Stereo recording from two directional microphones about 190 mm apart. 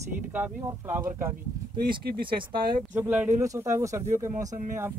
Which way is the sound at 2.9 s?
10° right (ahead or behind).